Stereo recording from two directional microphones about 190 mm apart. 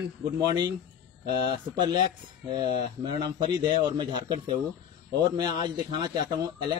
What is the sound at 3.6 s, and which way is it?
A man's voice, 25° right (ahead or behind).